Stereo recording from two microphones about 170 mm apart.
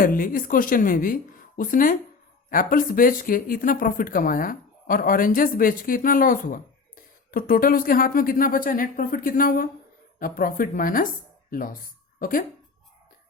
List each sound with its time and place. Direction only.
0.0 s speech: 55° left (ahead or behind)